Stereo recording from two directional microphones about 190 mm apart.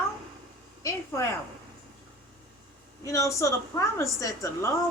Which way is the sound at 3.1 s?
15° left (ahead or behind).